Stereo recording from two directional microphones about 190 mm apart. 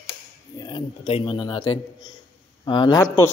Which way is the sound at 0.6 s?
25° left (ahead or behind).